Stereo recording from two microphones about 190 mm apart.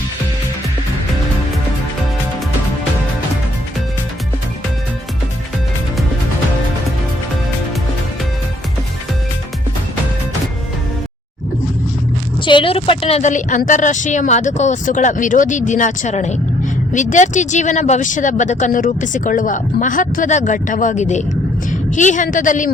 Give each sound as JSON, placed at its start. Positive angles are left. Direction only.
{"t": 12.5, "sound": "a woman's voice", "side_deg": 25}